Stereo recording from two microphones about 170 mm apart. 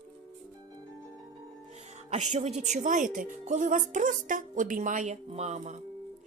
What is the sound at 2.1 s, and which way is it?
A woman's voice, 40° right (ahead or behind).